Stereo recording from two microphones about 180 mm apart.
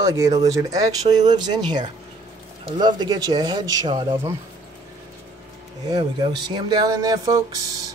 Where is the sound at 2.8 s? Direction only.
25° right (ahead or behind).